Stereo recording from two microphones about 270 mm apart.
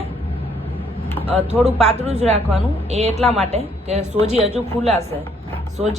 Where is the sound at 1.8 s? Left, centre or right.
Right.